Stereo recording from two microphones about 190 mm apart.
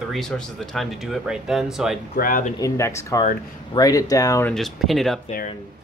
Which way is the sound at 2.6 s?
15° left (ahead or behind).